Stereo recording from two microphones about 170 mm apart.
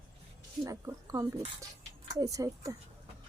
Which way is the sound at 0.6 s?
20° right (ahead or behind).